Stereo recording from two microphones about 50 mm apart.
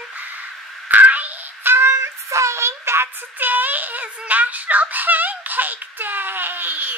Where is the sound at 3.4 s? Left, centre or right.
Right.